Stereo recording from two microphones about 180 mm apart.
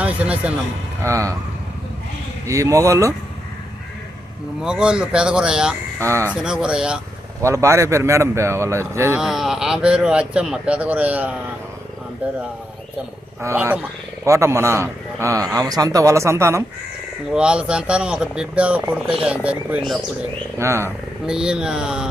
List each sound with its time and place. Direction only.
0.0 s a man's voice: 5° right (ahead or behind)
1.0 s a man's voice: 15° right (ahead or behind)
2.5 s a man's voice: 15° right (ahead or behind)
4.6 s speech: 5° right (ahead or behind)
6.0 s a man's voice: 15° right (ahead or behind)
6.3 s speech: 5° right (ahead or behind)
7.4 s a man's voice: 15° right (ahead or behind)
9.2 s a man's voice: centre (ahead or behind)
13.4 s a man's voice: 15° right (ahead or behind)
20.6 s a man's voice: 15° right (ahead or behind)
21.2 s speech: 5° right (ahead or behind)